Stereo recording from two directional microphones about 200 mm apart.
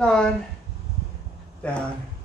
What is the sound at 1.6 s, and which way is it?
Speech, 5° left (ahead or behind).